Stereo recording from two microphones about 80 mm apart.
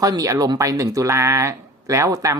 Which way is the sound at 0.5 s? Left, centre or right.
Right.